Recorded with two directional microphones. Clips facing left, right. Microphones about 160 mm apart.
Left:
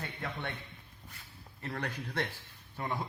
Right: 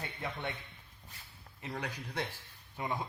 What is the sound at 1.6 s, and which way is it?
Speech, 10° right (ahead or behind).